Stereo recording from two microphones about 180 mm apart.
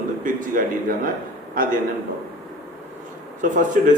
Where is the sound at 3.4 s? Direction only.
45° right (ahead or behind).